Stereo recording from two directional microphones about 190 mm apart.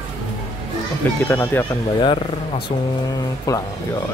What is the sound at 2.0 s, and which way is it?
Speech, 25° left (ahead or behind).